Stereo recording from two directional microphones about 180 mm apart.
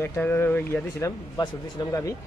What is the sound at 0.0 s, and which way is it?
Speech, 10° left (ahead or behind).